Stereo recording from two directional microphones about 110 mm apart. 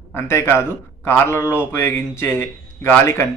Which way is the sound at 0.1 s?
25° left (ahead or behind).